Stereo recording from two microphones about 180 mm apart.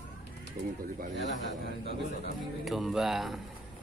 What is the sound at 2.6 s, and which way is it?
Speech, centre (ahead or behind).